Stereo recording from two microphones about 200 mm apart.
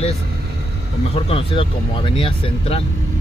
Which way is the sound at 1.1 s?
25° left (ahead or behind).